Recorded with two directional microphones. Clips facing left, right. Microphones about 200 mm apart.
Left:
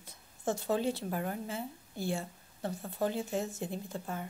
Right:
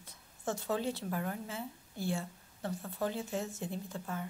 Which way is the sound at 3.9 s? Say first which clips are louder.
Left 1 dB; 25° left (ahead or behind).